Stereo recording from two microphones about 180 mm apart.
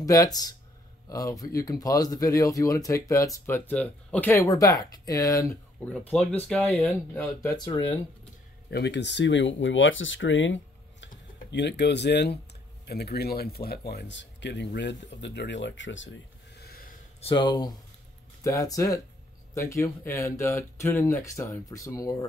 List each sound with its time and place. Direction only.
0.0 s speech: 20° left (ahead or behind)
7.4 s speech: 20° left (ahead or behind)
8.6 s speech: 70° left (ahead or behind); by 11.1 s 90° left
11.5 s speech: 70° left (ahead or behind)
17.2 s speech: 25° left (ahead or behind)